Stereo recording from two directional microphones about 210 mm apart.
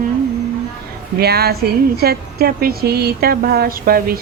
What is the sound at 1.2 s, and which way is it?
Speech, 50° right (ahead or behind).